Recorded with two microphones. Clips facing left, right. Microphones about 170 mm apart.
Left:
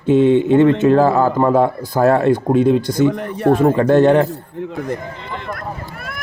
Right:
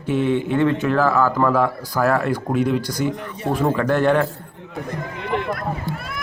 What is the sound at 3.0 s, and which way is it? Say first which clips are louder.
Speech: left 9 dB; 60° left (ahead or behind).